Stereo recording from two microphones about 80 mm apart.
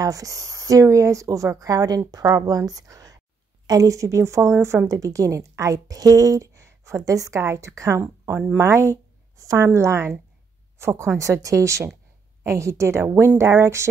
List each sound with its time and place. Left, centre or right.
0.0 s a woman's voice: right